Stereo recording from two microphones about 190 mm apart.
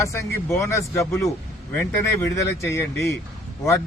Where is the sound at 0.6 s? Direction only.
15° left (ahead or behind).